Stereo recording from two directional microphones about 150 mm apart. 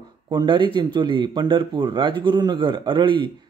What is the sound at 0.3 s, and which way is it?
Speech, 35° right (ahead or behind).